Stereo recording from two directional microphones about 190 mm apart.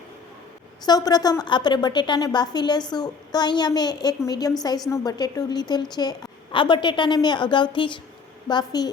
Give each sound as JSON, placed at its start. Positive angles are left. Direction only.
{"t": 0.9, "sound": "a woman's voice", "side_deg": 20}